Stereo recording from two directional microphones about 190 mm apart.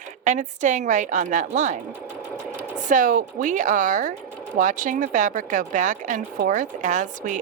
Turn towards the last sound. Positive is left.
turn(degrees=-40)  # may be behind; listen again after turning